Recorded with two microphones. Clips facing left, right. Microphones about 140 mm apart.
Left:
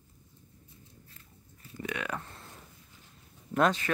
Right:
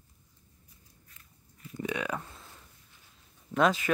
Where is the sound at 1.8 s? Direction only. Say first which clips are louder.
Right 3 dB; 15° right (ahead or behind).